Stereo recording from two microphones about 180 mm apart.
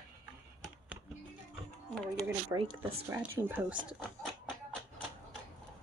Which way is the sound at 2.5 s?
20° right (ahead or behind).